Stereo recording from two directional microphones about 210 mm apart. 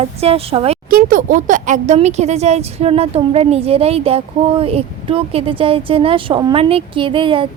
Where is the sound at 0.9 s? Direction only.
40° right (ahead or behind).